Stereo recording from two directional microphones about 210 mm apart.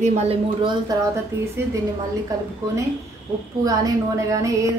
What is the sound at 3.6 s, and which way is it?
A woman's voice, 15° right (ahead or behind).